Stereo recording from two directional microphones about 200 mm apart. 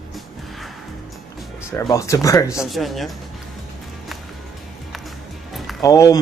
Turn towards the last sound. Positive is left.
turn(degrees=15)  # may be behind; listen again after turning